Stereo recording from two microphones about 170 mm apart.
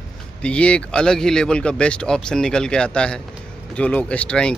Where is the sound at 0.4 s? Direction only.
5° left (ahead or behind).